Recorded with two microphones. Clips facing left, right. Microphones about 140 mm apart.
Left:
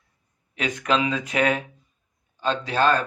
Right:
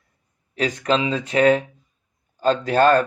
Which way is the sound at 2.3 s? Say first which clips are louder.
Right 6 dB; 45° right (ahead or behind).